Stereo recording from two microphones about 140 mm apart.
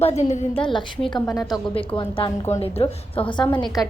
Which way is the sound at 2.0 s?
40° left (ahead or behind).